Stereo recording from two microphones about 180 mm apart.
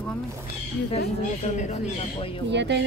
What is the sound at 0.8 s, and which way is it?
Speech, 35° left (ahead or behind).